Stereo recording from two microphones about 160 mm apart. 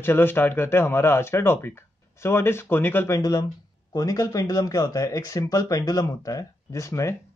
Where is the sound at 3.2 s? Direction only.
25° left (ahead or behind).